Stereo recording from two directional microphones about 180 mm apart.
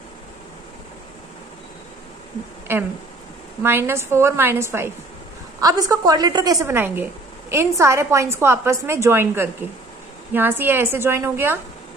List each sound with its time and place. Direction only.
2.7 s a woman's voice: 15° right (ahead or behind)